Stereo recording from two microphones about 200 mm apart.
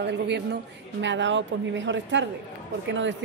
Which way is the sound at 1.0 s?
65° right (ahead or behind).